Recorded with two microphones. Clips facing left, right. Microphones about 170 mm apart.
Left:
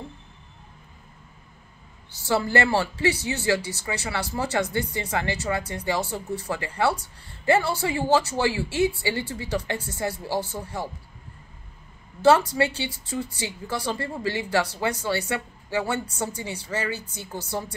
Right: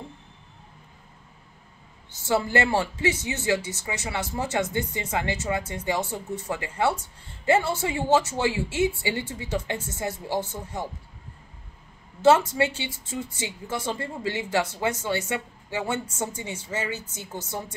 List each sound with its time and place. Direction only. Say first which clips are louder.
2.2 s a woman's voice: left 1 dB; 20° right (ahead or behind)
12.2 s a woman's voice: even; 20° right (ahead or behind)